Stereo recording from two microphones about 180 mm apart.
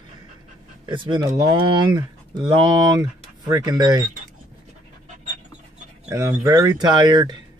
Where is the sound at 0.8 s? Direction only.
25° right (ahead or behind).